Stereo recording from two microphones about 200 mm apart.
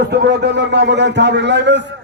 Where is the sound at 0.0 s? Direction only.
55° right (ahead or behind).